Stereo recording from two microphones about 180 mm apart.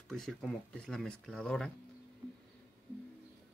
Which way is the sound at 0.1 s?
5° left (ahead or behind).